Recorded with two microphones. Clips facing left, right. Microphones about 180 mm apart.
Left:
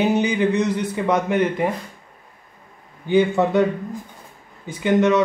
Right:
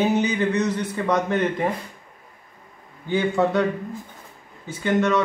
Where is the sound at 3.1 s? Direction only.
15° left (ahead or behind).